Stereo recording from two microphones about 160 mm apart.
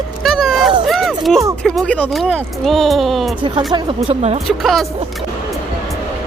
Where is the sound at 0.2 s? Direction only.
Centre (ahead or behind).